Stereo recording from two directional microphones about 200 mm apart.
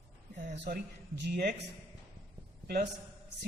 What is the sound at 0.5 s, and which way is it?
A man's voice, 55° right (ahead or behind).